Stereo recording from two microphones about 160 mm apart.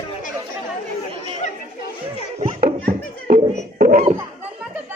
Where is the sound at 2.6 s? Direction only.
70° right (ahead or behind).